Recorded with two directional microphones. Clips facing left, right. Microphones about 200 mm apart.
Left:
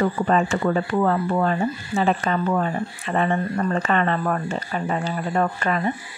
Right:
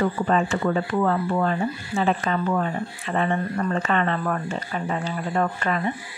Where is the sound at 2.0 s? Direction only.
40° left (ahead or behind).